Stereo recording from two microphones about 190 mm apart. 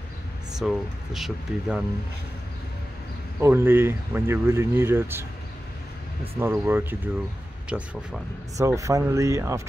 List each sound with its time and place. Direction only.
0.6 s speech: centre (ahead or behind)
3.3 s speech: 15° right (ahead or behind)
6.4 s speech: 10° right (ahead or behind)